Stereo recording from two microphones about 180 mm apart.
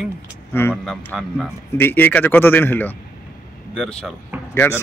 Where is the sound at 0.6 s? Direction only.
10° left (ahead or behind).